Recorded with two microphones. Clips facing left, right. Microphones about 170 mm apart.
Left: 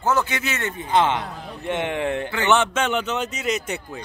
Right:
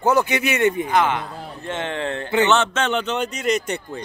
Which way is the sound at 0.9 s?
25° left (ahead or behind).